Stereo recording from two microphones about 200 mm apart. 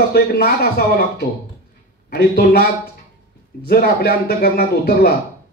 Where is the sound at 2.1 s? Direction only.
50° left (ahead or behind).